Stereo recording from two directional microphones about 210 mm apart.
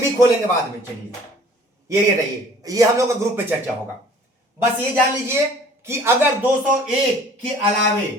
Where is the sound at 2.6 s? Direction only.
15° right (ahead or behind).